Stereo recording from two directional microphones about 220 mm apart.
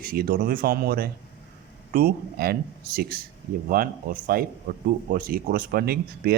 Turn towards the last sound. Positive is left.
turn(degrees=-45)  # may be behind; listen again after turning